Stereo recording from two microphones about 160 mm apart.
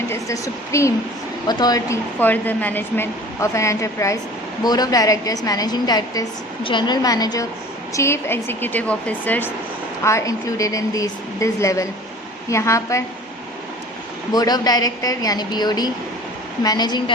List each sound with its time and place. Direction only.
0.1 s a woman's voice: 20° left (ahead or behind)
2.1 s a woman's voice: 10° left (ahead or behind)
14.3 s a woman's voice: 25° left (ahead or behind)